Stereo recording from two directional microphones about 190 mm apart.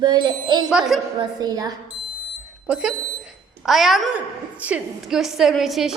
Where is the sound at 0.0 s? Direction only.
25° right (ahead or behind).